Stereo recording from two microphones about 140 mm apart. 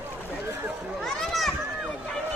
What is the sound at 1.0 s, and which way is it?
Run, centre (ahead or behind).